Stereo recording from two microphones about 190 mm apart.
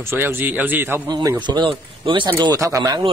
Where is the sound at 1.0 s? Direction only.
20° right (ahead or behind).